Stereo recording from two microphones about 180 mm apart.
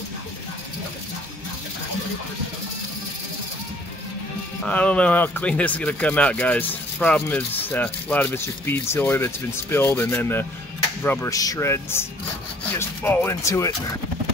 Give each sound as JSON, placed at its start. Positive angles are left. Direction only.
{"t": 4.6, "sound": "speech", "side_deg": 5}